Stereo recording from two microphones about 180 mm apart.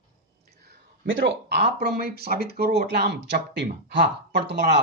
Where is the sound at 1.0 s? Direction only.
85° right.